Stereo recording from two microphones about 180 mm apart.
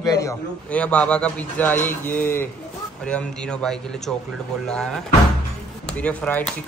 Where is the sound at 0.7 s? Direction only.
5° left (ahead or behind).